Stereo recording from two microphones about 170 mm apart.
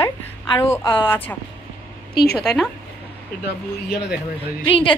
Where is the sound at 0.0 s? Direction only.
15° left (ahead or behind).